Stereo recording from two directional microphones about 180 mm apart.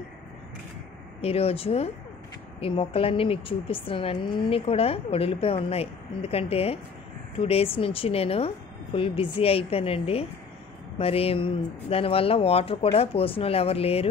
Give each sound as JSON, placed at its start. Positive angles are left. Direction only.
{"t": 1.2, "sound": "speech", "side_deg": 35}